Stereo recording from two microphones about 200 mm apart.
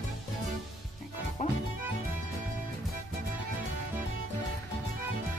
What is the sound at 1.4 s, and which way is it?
Music, 40° left (ahead or behind).